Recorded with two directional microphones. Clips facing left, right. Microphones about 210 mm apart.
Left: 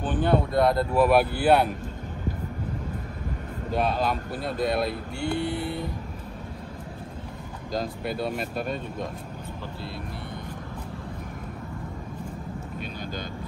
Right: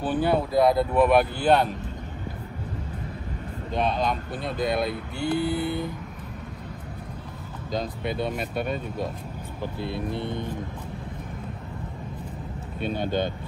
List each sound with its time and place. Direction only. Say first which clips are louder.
0.0 s speech: even; 10° right (ahead or behind); by 1.7 s 10° left (ahead or behind)
3.7 s speech: even; 5° left (ahead or behind)
7.7 s speech: right 1 dB; centre (ahead or behind)
9.6 s speech: right 9 dB; 20° right (ahead or behind)